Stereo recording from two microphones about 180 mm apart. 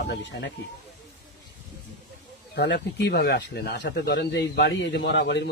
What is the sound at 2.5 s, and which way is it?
Speech, 65° left (ahead or behind).